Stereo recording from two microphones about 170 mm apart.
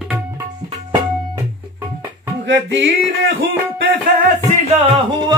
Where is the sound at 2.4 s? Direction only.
90° right.